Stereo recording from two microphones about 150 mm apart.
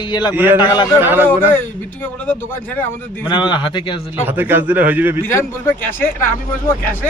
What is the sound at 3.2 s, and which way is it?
Speech, 30° left (ahead or behind).